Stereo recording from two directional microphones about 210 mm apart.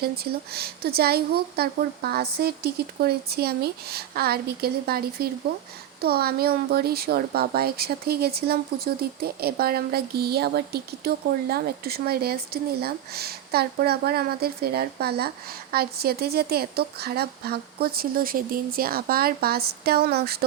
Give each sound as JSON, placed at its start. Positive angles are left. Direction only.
{"t": 0.5, "sound": "speech", "side_deg": -50}